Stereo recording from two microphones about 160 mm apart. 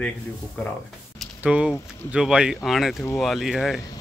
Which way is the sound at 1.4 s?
5° right (ahead or behind).